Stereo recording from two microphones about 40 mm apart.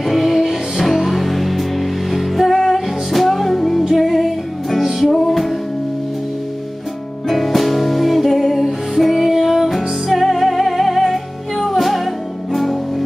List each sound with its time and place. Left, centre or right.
0.0 s music: centre
7.2 s music: centre